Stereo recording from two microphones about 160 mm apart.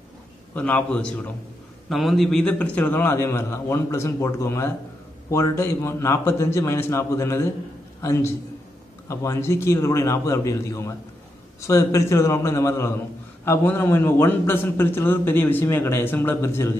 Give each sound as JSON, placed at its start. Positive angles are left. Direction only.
{"t": 0.6, "sound": "a man's voice", "side_deg": 10}